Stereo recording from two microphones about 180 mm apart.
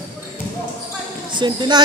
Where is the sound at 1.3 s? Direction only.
25° right (ahead or behind).